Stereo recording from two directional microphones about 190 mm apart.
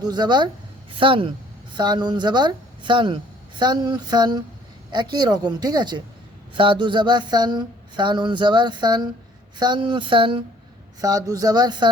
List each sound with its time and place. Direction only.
0.0 s speech: 20° right (ahead or behind)